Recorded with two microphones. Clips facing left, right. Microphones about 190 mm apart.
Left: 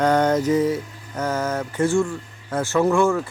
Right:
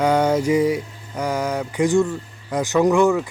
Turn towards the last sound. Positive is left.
turn(degrees=-15)  # may be behind; listen again after turning